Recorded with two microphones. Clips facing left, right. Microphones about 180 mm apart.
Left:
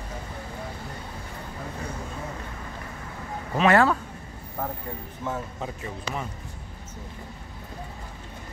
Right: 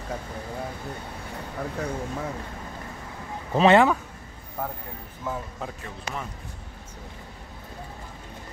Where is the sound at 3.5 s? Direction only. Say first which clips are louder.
Right 3 dB; 25° right (ahead or behind).